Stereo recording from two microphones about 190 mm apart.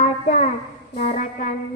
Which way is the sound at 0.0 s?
45° left (ahead or behind).